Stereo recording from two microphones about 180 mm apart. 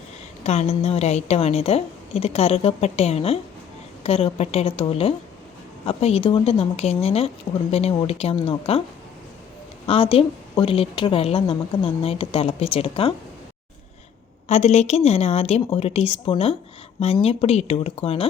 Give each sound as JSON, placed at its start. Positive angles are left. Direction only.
{"t": 0.4, "sound": "a woman's voice", "side_deg": 35}
{"t": 9.8, "sound": "a woman's voice", "side_deg": 30}
{"t": 14.4, "sound": "a woman's voice", "side_deg": 40}